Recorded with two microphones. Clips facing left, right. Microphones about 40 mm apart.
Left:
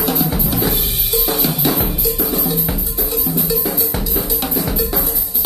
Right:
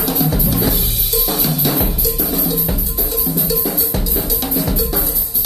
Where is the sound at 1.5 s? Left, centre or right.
Left.